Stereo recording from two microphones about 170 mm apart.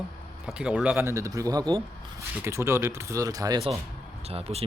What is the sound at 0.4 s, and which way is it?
Speech, 5° right (ahead or behind).